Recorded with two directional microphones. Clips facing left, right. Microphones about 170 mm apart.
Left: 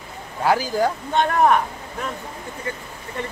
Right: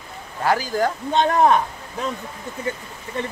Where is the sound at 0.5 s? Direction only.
10° left (ahead or behind).